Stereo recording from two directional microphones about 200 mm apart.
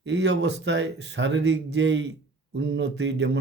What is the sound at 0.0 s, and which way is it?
Speech, 60° right (ahead or behind).